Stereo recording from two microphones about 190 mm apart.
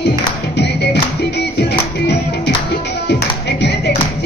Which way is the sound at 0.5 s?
65° left (ahead or behind).